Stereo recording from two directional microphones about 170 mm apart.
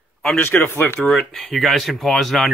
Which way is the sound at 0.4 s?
15° left (ahead or behind).